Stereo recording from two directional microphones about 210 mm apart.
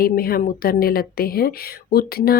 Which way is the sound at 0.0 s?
45° left (ahead or behind).